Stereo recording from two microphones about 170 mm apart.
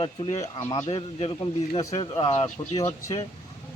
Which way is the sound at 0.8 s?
30° left (ahead or behind).